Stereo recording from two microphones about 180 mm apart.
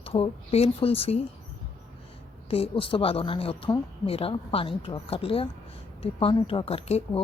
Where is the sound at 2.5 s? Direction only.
30° left (ahead or behind).